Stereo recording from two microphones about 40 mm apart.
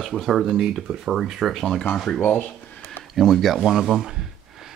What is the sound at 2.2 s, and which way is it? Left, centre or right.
Speech, left.